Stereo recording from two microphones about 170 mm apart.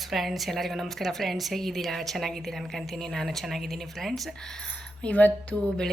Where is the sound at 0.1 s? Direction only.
Centre (ahead or behind).